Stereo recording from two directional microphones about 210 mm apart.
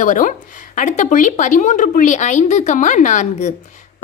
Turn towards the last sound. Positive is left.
turn(degrees=35)  # may be behind; listen again after turning